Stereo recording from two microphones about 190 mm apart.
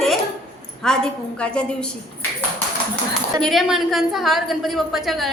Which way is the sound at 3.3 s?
Centre (ahead or behind).